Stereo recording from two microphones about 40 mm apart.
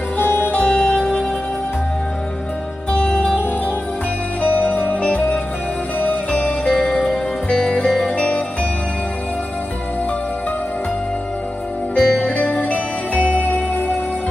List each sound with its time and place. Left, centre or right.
0.5 s music: left
0.7 s music: left
2.9 s music: left
4.4 s music: left
5.0 s music: left
7.4 s music: centre
11.9 s music: left